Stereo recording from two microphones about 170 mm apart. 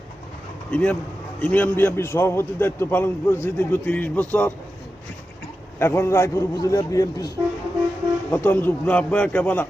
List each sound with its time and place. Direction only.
0.7 s a man's voice: 5° left (ahead or behind)
5.8 s a man's voice: 15° left (ahead or behind)
8.3 s a man's voice: 10° left (ahead or behind)